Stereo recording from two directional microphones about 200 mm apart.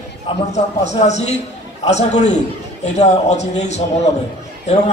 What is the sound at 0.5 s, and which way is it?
A man's voice, 35° left (ahead or behind).